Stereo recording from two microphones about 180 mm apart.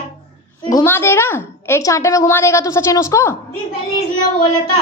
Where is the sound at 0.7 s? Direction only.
15° left (ahead or behind).